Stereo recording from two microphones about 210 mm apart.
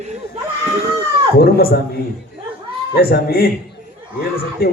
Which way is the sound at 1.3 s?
45° left (ahead or behind).